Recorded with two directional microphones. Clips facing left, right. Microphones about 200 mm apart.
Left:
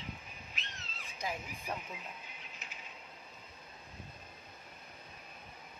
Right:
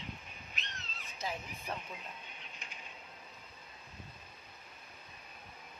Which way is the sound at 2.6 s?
5° left (ahead or behind).